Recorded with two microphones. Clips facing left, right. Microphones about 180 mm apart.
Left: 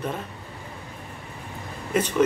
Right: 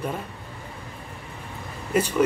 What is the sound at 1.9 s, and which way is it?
Speech, 10° right (ahead or behind).